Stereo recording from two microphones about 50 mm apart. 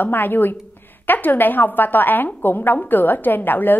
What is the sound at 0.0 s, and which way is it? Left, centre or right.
A woman's voice, left.